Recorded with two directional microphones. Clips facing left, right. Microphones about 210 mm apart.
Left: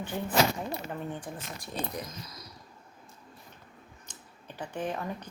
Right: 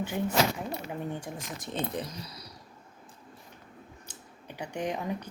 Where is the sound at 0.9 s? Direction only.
10° right (ahead or behind).